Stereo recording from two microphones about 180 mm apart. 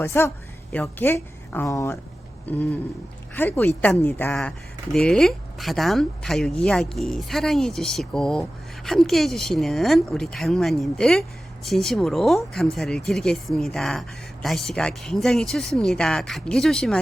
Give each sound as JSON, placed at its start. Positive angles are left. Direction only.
{"t": 0.0, "sound": "a woman's voice", "side_deg": 15}